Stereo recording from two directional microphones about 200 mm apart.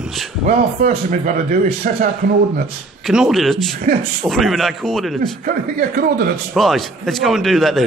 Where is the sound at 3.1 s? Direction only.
Centre (ahead or behind).